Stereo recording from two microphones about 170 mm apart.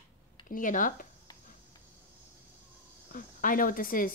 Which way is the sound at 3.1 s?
55° left (ahead or behind).